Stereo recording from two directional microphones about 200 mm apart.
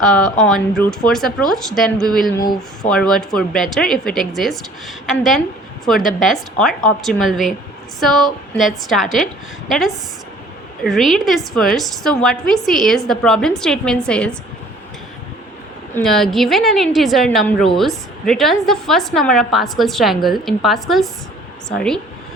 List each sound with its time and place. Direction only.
0.0 s a woman's voice: 5° left (ahead or behind)
5.8 s a woman's voice: centre (ahead or behind)
16.0 s a woman's voice: centre (ahead or behind)